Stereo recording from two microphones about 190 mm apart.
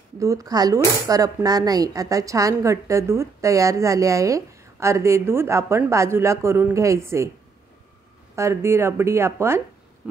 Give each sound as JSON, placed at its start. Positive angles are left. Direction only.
{"t": 0.2, "sound": "a woman's voice", "side_deg": -15}
{"t": 8.4, "sound": "a woman's voice", "side_deg": -15}